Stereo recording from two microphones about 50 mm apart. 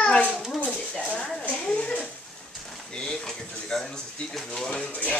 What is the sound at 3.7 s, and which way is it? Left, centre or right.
A child's voice, centre.